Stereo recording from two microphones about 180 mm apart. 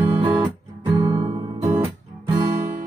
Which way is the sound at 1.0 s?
20° right (ahead or behind).